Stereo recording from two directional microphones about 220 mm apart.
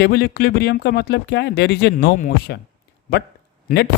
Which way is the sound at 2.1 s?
35° left (ahead or behind).